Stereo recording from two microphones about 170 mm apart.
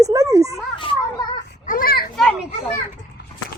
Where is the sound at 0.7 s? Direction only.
25° left (ahead or behind).